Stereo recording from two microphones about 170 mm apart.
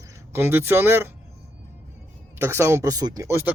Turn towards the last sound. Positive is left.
turn(degrees=-15)  # may be behind; listen again after turning